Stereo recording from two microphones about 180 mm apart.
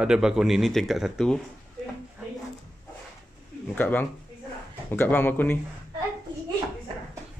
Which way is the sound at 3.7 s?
10° left (ahead or behind).